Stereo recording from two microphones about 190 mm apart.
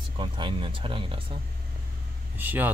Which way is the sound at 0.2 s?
25° right (ahead or behind).